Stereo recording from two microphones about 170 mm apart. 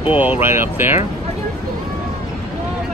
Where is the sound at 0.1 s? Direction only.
10° right (ahead or behind).